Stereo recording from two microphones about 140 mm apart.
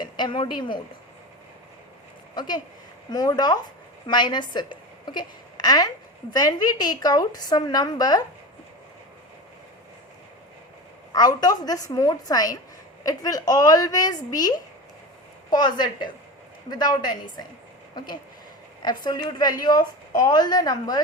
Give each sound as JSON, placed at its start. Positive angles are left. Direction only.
{"t": 0.0, "sound": "speech", "side_deg": 35}
{"t": 2.3, "sound": "a woman's voice", "side_deg": 30}
{"t": 11.1, "sound": "a woman's voice", "side_deg": 30}
{"t": 19.0, "sound": "a woman's voice", "side_deg": 30}